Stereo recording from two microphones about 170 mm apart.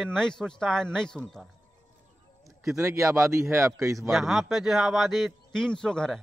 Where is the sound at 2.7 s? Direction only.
20° right (ahead or behind).